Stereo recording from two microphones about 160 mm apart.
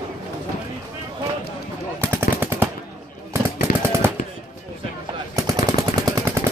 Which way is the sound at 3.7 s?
70° left (ahead or behind).